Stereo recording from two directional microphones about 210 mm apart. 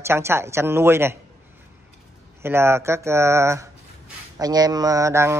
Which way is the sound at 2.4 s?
10° right (ahead or behind).